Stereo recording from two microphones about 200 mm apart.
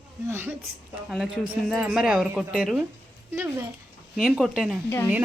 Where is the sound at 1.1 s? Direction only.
Centre (ahead or behind).